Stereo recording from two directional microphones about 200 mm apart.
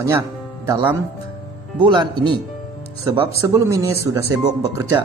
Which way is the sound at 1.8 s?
25° right (ahead or behind).